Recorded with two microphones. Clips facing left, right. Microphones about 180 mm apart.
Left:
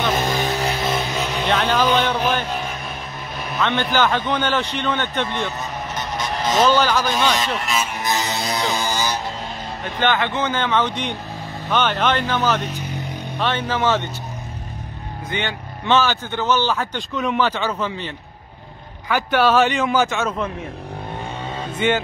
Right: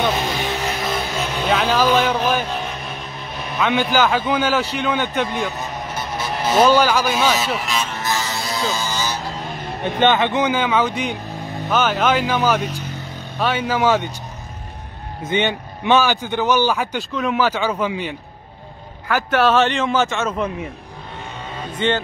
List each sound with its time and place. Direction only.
0.3 s vehicle: 40° left (ahead or behind)
0.8 s vehicle: 15° left (ahead or behind)
1.4 s a man's voice: 10° right (ahead or behind)
3.5 s a man's voice: 10° right (ahead or behind)
7.9 s music: 15° left (ahead or behind)
9.9 s a man's voice: 20° right (ahead or behind)
15.2 s a man's voice: 20° right (ahead or behind)
17.1 s a man's voice: centre (ahead or behind)
19.0 s a man's voice: centre (ahead or behind)
21.7 s speech: 10° left (ahead or behind)